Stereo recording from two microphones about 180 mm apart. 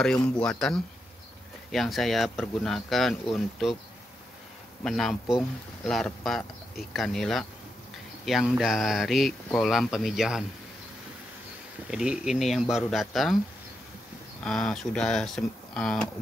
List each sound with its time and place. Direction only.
0.0 s speech: 5° left (ahead or behind)
4.8 s speech: centre (ahead or behind)
11.9 s speech: 5° right (ahead or behind)
14.4 s speech: 5° left (ahead or behind)